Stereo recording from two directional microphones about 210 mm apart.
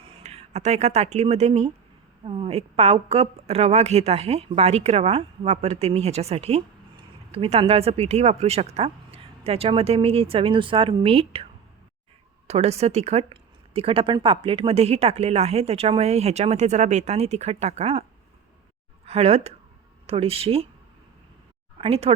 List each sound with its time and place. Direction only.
0.2 s speech: 30° right (ahead or behind)
12.5 s speech: 30° right (ahead or behind)
19.0 s speech: 30° right (ahead or behind)
21.8 s speech: 30° right (ahead or behind)